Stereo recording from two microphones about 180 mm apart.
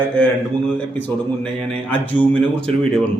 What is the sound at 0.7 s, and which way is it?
A man's voice, 10° left (ahead or behind).